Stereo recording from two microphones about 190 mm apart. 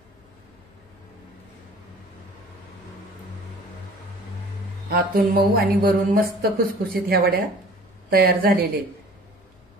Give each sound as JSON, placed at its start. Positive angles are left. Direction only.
{"t": 4.8, "sound": "a woman's voice", "side_deg": -50}